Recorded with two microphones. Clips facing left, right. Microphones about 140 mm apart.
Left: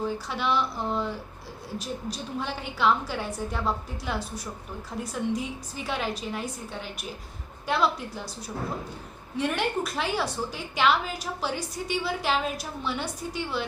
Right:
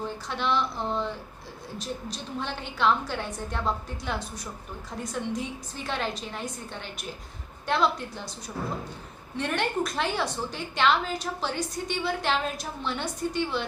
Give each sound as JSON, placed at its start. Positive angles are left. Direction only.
{"t": 0.0, "sound": "a woman's voice", "side_deg": 5}
{"t": 9.4, "sound": "a woman's voice", "side_deg": 5}